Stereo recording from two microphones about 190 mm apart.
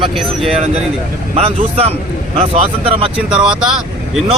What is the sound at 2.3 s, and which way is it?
Speech, 30° right (ahead or behind).